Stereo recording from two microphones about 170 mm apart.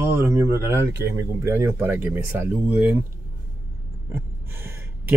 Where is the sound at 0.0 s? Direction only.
15° right (ahead or behind).